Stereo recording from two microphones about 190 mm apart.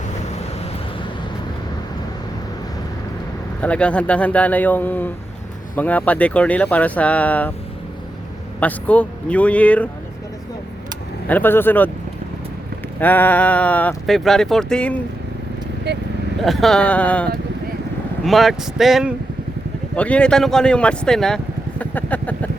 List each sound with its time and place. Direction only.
3.6 s speech: 5° left (ahead or behind)
8.6 s speech: 5° left (ahead or behind)
11.3 s speech: 10° left (ahead or behind)
13.0 s speech: 10° left (ahead or behind)
15.9 s speech: 60° right (ahead or behind)
16.4 s speech: centre (ahead or behind)
18.3 s speech: centre (ahead or behind)